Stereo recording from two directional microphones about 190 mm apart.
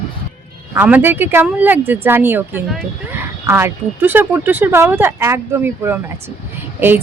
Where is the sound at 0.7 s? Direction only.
10° right (ahead or behind).